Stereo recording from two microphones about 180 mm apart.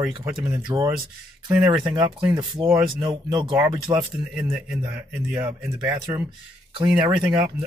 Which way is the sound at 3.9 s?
5° right (ahead or behind).